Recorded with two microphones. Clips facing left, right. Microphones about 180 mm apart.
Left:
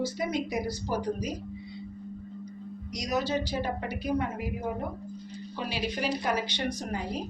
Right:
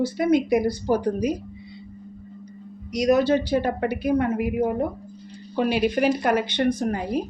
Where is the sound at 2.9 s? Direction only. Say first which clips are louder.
Right 11 dB; 60° right (ahead or behind).